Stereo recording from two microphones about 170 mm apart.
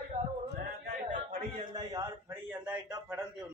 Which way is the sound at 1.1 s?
45° right (ahead or behind).